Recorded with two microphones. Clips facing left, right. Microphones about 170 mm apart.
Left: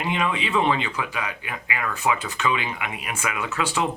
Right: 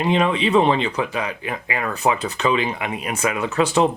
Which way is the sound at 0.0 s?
30° right (ahead or behind).